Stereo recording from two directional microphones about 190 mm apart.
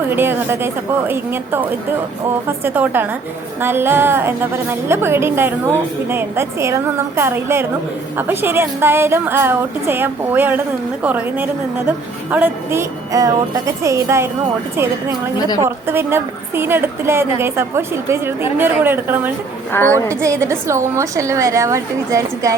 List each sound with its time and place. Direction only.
0.1 s a woman's voice: 10° right (ahead or behind)
15.6 s a woman's voice: 10° right (ahead or behind)